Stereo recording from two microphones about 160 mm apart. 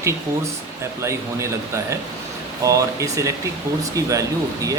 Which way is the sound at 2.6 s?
20° right (ahead or behind).